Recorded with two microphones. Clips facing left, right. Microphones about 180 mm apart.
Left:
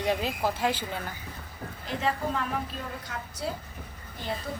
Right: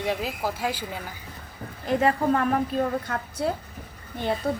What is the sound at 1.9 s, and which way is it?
A woman's voice, 55° right (ahead or behind).